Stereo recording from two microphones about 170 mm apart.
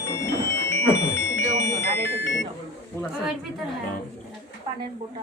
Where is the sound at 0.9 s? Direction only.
90° left.